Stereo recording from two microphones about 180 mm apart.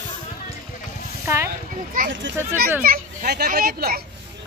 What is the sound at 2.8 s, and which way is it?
A child's voice, 55° right (ahead or behind).